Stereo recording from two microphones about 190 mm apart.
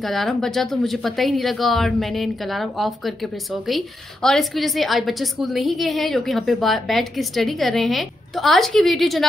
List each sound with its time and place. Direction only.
0.0 s speech: centre (ahead or behind)